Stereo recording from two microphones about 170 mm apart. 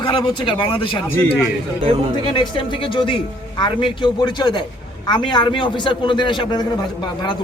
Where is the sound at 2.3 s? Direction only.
30° left (ahead or behind).